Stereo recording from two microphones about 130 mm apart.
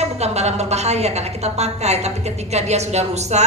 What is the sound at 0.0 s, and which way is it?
A woman's voice, 55° right (ahead or behind).